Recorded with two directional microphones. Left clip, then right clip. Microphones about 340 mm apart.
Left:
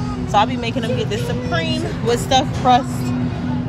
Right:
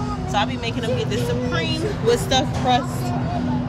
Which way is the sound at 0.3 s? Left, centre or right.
Centre.